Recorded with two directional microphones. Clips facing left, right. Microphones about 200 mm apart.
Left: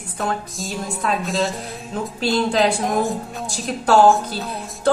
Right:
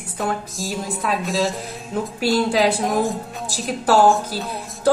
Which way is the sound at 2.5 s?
Centre (ahead or behind).